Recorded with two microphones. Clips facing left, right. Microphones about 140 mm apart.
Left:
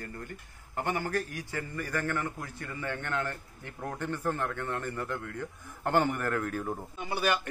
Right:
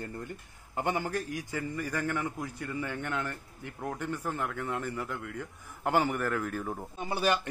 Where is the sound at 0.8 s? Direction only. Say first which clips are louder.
Even; 15° right (ahead or behind); by 6.7 s centre (ahead or behind).